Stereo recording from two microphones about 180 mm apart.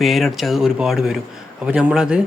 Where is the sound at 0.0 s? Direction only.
Centre (ahead or behind).